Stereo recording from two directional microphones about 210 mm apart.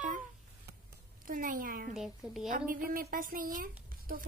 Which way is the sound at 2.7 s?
40° right (ahead or behind).